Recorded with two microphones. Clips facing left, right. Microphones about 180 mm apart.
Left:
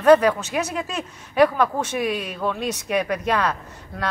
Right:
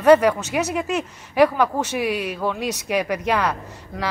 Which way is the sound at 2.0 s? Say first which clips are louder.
Right 2 dB; 70° right (ahead or behind).